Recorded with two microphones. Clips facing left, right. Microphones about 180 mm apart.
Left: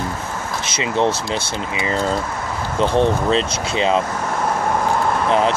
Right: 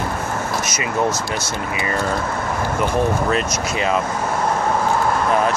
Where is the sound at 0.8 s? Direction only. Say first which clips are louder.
Left 3 dB; 25° left (ahead or behind).